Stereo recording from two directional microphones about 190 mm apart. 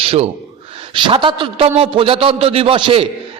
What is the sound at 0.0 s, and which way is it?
A man's voice, 30° right (ahead or behind).